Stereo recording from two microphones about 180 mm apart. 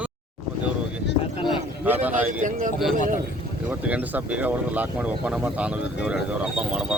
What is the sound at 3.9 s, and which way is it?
Speech, 10° right (ahead or behind).